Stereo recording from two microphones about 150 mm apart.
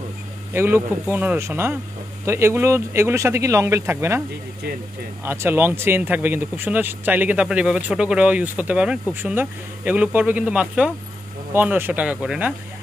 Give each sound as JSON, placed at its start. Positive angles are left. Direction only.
{"t": 0.5, "sound": "speech", "side_deg": -15}
{"t": 5.2, "sound": "speech", "side_deg": -15}